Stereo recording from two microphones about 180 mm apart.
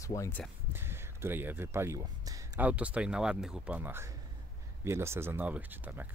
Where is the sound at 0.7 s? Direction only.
15° right (ahead or behind).